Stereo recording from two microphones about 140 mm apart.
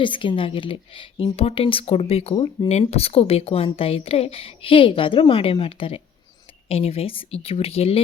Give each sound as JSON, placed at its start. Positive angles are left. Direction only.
{"t": 0.0, "sound": "speech", "side_deg": 35}
{"t": 2.6, "sound": "a woman's voice", "side_deg": 50}